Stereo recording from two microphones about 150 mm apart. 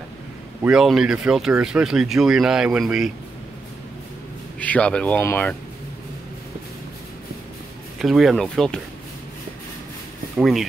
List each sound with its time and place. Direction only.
0.7 s speech: 5° right (ahead or behind)
4.6 s speech: 10° left (ahead or behind)
8.0 s speech: centre (ahead or behind)
10.3 s speech: centre (ahead or behind)